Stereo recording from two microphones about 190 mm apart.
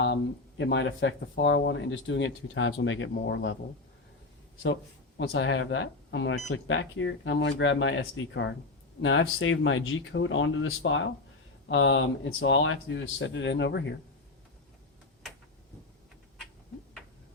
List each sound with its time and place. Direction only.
0.6 s speech: 70° left (ahead or behind)
4.6 s speech: 70° left (ahead or behind)
9.0 s speech: 90° left
11.7 s speech: 75° left (ahead or behind)